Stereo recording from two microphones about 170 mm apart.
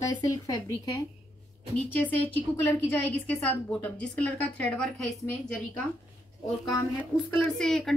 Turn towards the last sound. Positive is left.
turn(degrees=0)  # may be behind; listen again after turning